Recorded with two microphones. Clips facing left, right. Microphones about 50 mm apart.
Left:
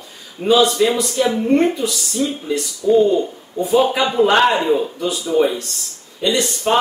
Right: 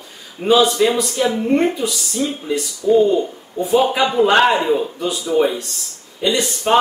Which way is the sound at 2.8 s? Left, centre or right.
Centre.